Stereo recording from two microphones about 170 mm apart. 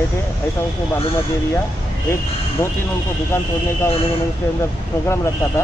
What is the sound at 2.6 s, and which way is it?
Speech, 15° left (ahead or behind).